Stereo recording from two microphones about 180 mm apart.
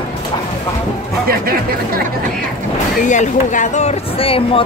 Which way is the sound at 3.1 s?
45° left (ahead or behind).